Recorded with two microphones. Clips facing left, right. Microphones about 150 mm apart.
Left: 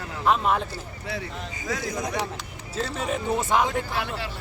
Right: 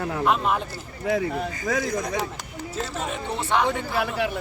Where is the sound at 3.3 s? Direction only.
10° left (ahead or behind).